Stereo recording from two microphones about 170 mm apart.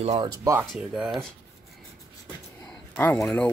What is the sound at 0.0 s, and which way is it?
Speech, 35° right (ahead or behind).